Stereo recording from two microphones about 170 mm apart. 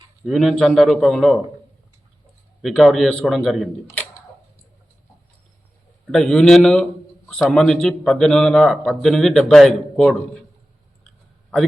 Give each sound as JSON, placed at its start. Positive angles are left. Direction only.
{"t": 0.3, "sound": "speech", "side_deg": 0}
{"t": 2.6, "sound": "speech", "side_deg": 0}
{"t": 6.1, "sound": "speech", "side_deg": 0}